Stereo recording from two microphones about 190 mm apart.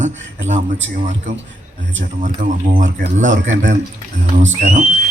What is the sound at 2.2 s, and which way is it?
A man's voice, 45° right (ahead or behind).